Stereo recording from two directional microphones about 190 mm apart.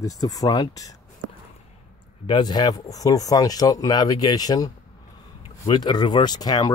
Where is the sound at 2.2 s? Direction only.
25° left (ahead or behind).